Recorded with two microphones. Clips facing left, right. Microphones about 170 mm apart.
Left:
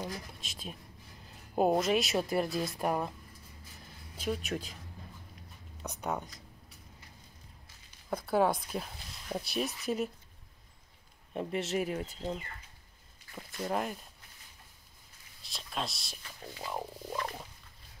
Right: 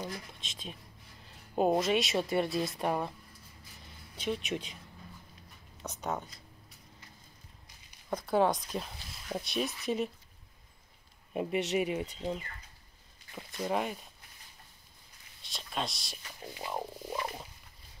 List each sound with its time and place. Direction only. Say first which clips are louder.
0.0 s speech: even; 5° left (ahead or behind)
4.2 s speech: even; 5° left (ahead or behind)
5.8 s speech: even; 10° left (ahead or behind)
8.1 s speech: even; 5° left (ahead or behind)
11.3 s speech: right 2 dB; centre (ahead or behind)
15.4 s speech: right 1 dB; centre (ahead or behind)
16.3 s a sound: right 1 dB; 15° right (ahead or behind)